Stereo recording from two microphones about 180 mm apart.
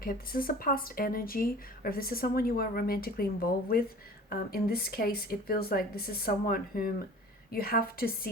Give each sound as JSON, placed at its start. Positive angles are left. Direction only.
{"t": 0.0, "sound": "speech", "side_deg": 50}
{"t": 4.3, "sound": "speech", "side_deg": 55}